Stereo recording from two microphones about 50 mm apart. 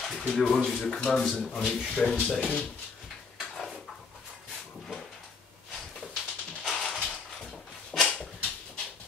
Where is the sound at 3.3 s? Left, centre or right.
Centre.